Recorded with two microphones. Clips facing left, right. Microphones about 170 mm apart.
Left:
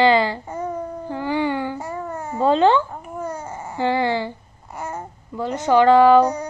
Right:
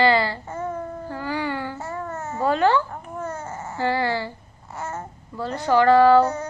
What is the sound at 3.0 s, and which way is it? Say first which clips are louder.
Babbling: left 2 dB; 10° left (ahead or behind).